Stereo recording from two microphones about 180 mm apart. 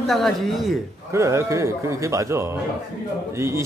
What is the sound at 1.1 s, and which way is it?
A woman's voice, 15° right (ahead or behind).